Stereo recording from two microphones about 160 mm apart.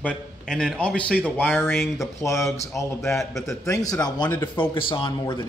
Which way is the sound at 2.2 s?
20° left (ahead or behind).